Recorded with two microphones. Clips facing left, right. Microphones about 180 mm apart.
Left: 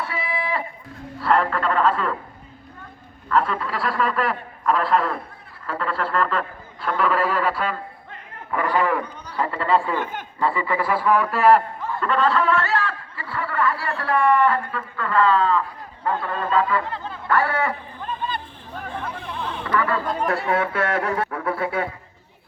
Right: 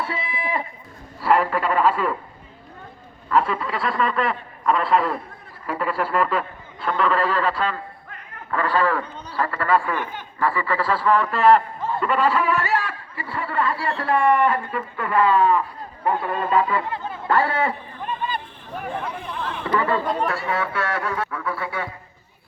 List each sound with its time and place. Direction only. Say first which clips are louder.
0.0 s a sound: left 1 dB; 25° right (ahead or behind)
1.2 s speech: right 1 dB; 10° right (ahead or behind)
3.2 s a man's voice: right 1 dB; 5° right (ahead or behind)
6.8 s a man's voice: even; 5° left (ahead or behind)
11.9 s speech: even; 5° right (ahead or behind)
16.0 s snicker: right 2 dB; 20° right (ahead or behind)
18.8 s speech: right 2 dB; 10° right (ahead or behind)
19.7 s speech: right 1 dB; 25° right (ahead or behind)
20.2 s speech: left 2 dB; 55° left (ahead or behind)
21.1 s a sound: left 3 dB; 30° left (ahead or behind)
21.4 s a man's voice: left 4 dB; 55° left (ahead or behind)